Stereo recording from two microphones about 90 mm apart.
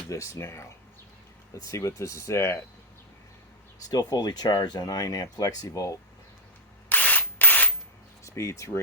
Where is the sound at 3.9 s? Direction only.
45° left (ahead or behind).